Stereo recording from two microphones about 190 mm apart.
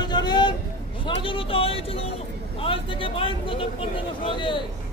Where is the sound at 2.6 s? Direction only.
30° left (ahead or behind).